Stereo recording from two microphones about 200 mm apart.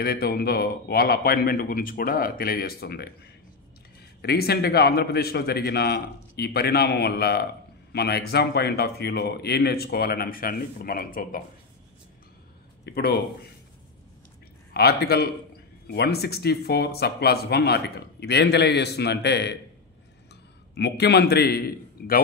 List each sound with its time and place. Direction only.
0.0 s speech: 50° left (ahead or behind)
4.2 s speech: 55° left (ahead or behind)
12.8 s speech: 55° left (ahead or behind)
14.7 s speech: 50° left (ahead or behind)
20.7 s speech: 55° left (ahead or behind)